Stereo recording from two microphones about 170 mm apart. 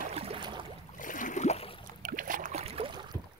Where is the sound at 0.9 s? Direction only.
50° left (ahead or behind).